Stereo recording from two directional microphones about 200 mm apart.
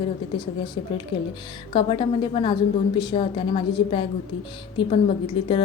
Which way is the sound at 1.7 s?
25° left (ahead or behind).